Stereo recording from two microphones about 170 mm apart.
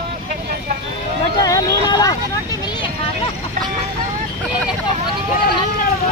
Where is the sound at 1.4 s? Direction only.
20° left (ahead or behind).